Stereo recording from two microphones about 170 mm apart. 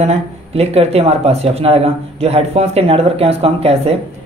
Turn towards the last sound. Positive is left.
turn(degrees=-35)  # may be behind; listen again after turning